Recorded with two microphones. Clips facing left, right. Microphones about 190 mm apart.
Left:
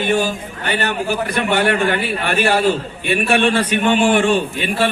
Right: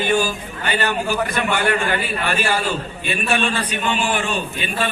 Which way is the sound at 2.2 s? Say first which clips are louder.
Left 8 dB; 60° left (ahead or behind).